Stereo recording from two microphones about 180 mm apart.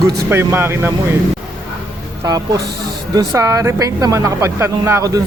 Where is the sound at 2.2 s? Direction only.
20° right (ahead or behind).